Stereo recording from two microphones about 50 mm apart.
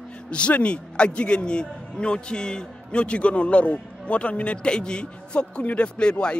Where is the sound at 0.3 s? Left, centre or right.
Left.